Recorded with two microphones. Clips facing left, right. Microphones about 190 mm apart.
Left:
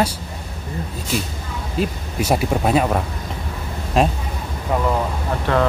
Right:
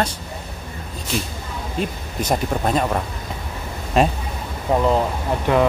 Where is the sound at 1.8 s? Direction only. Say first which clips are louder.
Left 3 dB; 10° left (ahead or behind).